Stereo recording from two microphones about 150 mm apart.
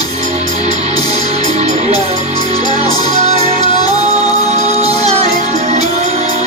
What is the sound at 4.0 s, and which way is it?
Music, 45° right (ahead or behind).